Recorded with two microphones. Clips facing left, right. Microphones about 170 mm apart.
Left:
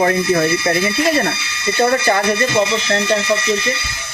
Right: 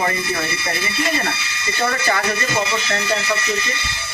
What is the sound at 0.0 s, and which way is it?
Speech, 55° left (ahead or behind).